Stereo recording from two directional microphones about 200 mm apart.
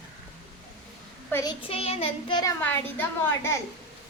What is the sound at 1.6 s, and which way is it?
Child singing, 30° left (ahead or behind).